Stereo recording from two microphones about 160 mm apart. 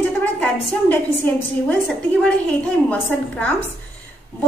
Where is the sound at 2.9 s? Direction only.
10° left (ahead or behind).